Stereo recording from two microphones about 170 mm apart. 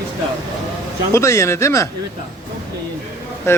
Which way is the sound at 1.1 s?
15° left (ahead or behind).